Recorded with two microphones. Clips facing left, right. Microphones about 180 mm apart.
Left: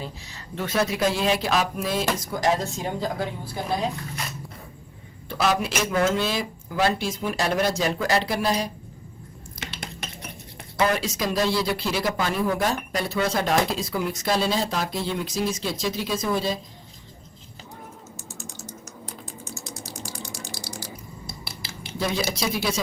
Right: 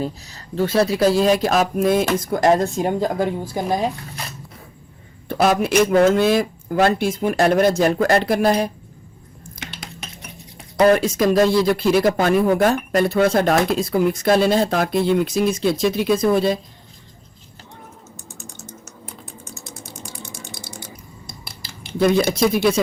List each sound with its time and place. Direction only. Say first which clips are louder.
0.5 s speech: right 7 dB; 30° right (ahead or behind)
5.3 s speech: right 7 dB; 55° right (ahead or behind)
10.8 s speech: right 9 dB; 50° right (ahead or behind)
18.3 s typing: right 1 dB; centre (ahead or behind)
21.9 s speech: right 10 dB; 55° right (ahead or behind)